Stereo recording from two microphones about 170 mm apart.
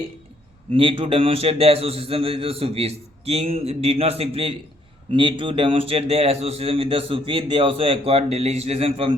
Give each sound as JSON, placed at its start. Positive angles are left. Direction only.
{"t": 0.7, "sound": "a man's voice", "side_deg": -30}